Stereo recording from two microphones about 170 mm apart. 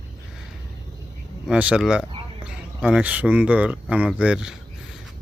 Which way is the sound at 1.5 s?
5° right (ahead or behind).